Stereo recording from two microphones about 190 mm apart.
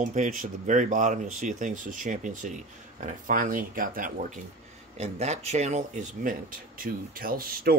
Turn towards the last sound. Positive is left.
turn(degrees=-50)  # may be behind; listen again after turning